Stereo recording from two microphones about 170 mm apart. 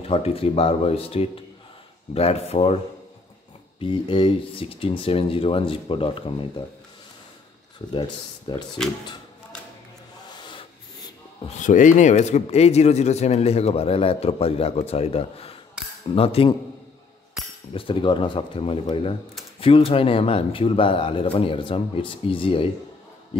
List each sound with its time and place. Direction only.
0.0 s speech: 35° left (ahead or behind)
3.8 s speech: 30° left (ahead or behind)
7.9 s speech: 25° left (ahead or behind)
10.3 s rub: 25° left (ahead or behind)
11.4 s speech: 50° left (ahead or behind)
15.8 s cutlery: 5° right (ahead or behind)
16.2 s speech: 35° left (ahead or behind)
17.7 s speech: 30° left (ahead or behind)